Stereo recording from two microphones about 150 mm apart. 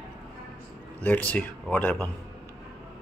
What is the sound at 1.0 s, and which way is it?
A man's voice, 10° left (ahead or behind).